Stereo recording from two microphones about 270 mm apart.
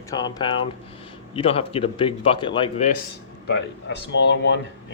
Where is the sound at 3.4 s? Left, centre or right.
Left.